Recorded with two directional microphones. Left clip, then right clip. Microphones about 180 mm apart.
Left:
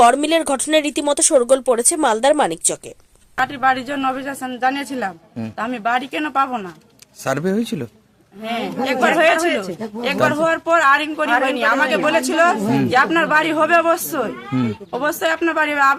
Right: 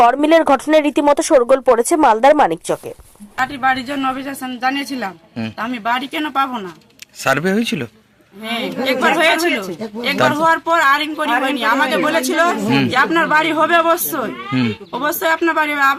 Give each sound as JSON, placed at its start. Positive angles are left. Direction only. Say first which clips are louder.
{"t": 0.0, "sound": "speech", "louder": "right 2 dB", "side_deg": 0}
{"t": 3.4, "sound": "speech", "louder": "even", "side_deg": 30}
{"t": 7.3, "sound": "speech", "louder": "right 4 dB", "side_deg": 5}
{"t": 8.5, "sound": "speech", "louder": "right 2 dB", "side_deg": 30}
{"t": 12.6, "sound": "speech", "louder": "right 3 dB", "side_deg": 10}
{"t": 12.9, "sound": "speech", "louder": "even", "side_deg": 30}